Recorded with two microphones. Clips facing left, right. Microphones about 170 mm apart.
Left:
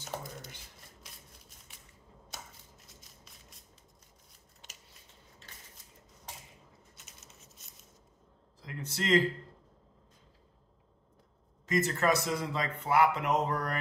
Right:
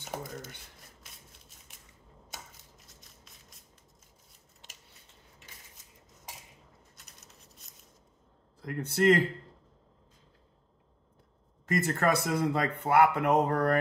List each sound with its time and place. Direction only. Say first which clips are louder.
7.0 s a sound: even; centre (ahead or behind)
8.5 s speech: right 9 dB; 55° right (ahead or behind)
11.6 s speech: right 1 dB; 55° right (ahead or behind)